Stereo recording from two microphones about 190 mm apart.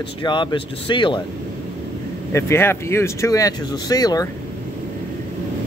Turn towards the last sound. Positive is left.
turn(degrees=20)  # may be behind; listen again after turning